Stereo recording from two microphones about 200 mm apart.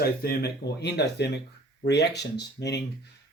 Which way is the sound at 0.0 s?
50° left (ahead or behind).